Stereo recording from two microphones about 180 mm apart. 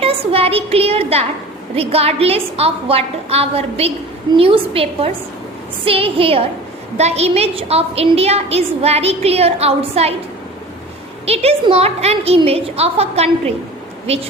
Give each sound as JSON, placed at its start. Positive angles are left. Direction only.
{"t": 0.0, "sound": "a woman's voice", "side_deg": -30}
{"t": 11.3, "sound": "a woman's voice", "side_deg": -35}